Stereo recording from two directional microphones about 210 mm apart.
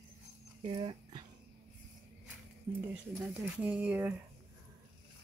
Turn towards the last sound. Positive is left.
turn(degrees=-5)  # may be behind; listen again after turning